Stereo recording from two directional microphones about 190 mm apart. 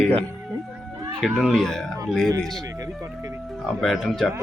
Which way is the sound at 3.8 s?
Centre (ahead or behind).